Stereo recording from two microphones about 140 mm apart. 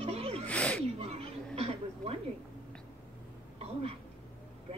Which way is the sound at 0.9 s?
45° right (ahead or behind).